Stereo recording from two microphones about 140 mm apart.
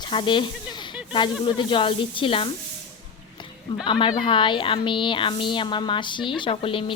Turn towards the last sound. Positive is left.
turn(degrees=40)  # may be behind; listen again after turning